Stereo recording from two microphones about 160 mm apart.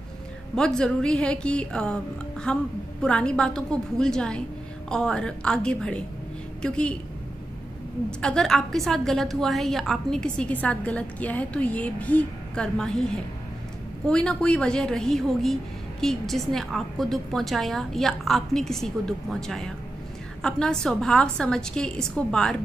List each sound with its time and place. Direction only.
0.6 s a woman's voice: 5° left (ahead or behind)
8.2 s a woman's voice: 5° left (ahead or behind)